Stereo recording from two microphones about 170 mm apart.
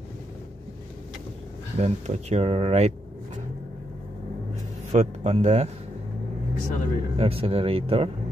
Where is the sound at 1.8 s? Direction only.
40° right (ahead or behind).